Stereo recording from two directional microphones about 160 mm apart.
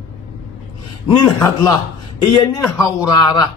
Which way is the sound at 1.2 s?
25° left (ahead or behind).